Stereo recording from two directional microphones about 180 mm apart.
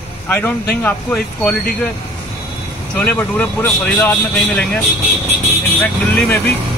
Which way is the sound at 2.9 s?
10° left (ahead or behind).